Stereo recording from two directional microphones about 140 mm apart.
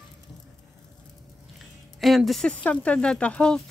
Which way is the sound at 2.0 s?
Centre (ahead or behind).